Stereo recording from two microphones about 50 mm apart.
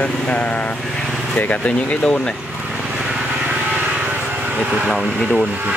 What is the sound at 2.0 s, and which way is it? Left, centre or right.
Speech, centre.